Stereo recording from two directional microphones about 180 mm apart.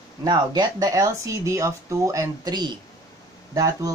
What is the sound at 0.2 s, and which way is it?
Speech, 20° right (ahead or behind).